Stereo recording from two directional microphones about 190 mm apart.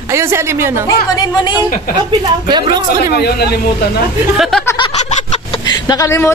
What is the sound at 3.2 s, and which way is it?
Speech, 55° left (ahead or behind).